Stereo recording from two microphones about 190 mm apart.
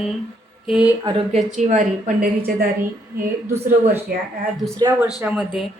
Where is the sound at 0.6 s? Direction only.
5° right (ahead or behind).